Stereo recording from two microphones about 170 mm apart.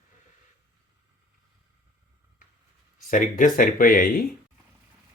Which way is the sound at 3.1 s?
50° left (ahead or behind).